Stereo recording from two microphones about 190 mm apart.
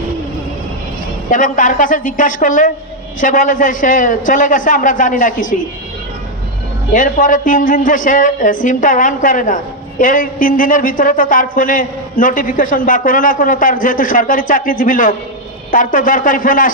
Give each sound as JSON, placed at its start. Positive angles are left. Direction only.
{"t": 1.3, "sound": "speech", "side_deg": 45}
{"t": 6.9, "sound": "speech", "side_deg": 45}